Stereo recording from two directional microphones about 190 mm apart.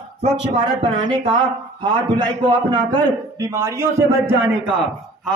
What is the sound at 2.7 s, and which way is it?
A man's voice, 20° right (ahead or behind).